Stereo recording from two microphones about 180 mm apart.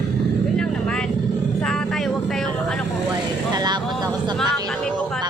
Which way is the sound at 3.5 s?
20° right (ahead or behind).